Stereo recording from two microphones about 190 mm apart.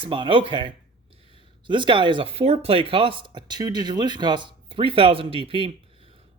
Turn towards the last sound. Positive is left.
turn(degrees=-30)  # may be behind; listen again after turning